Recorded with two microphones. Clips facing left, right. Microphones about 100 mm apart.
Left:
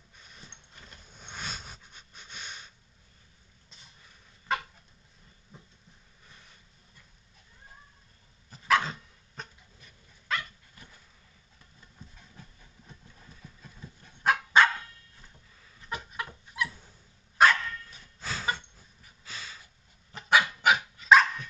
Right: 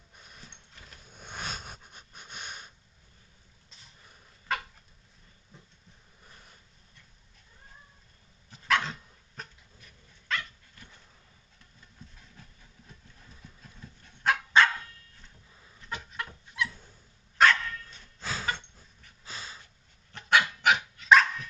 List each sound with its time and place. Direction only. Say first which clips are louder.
0.2 s vehicle: even; 5° right (ahead or behind)
1.3 s a sound: right 2 dB; 50° right (ahead or behind)
2.3 s sniff: right 1 dB; 5° right (ahead or behind)
3.7 s dog: left 1 dB; centre (ahead or behind)
5.5 s a sound: left 2 dB; centre (ahead or behind)
8.5 s dog: left 2 dB; centre (ahead or behind)
12.0 s dog: even; centre (ahead or behind)
13.4 s dog: left 1 dB; 5° left (ahead or behind)
15.9 s dog: left 1 dB; 5° left (ahead or behind)
19.2 s a sound: right 1 dB; 35° right (ahead or behind)
19.5 s dog: right 1 dB; 5° left (ahead or behind)